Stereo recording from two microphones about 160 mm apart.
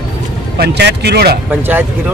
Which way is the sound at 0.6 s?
90° right.